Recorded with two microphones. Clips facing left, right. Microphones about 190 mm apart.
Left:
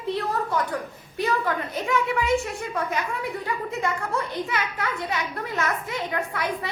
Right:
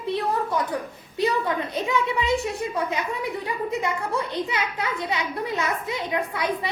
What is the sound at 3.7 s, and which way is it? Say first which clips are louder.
A woman's voice: right 1 dB; 15° right (ahead or behind).